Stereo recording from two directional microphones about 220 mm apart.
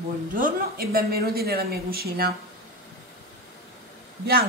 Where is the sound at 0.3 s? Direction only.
40° right (ahead or behind).